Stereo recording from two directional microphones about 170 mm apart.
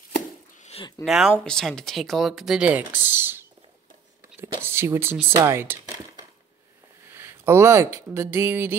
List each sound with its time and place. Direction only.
0.7 s a sound: 35° left (ahead or behind)
1.0 s speech: centre (ahead or behind)
4.6 s speech: 15° right (ahead or behind)